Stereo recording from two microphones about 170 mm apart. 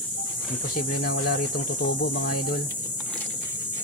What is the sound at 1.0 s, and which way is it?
Speech, 65° left (ahead or behind).